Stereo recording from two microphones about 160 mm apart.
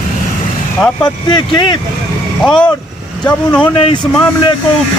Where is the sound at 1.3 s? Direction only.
30° left (ahead or behind).